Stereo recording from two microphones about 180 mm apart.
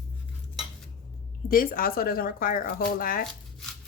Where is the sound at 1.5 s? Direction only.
55° left (ahead or behind).